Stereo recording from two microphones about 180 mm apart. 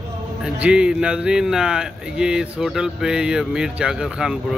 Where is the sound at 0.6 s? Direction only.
5° right (ahead or behind).